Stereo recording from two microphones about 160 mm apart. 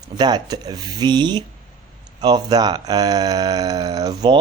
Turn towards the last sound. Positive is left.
turn(degrees=-25)  # may be behind; listen again after turning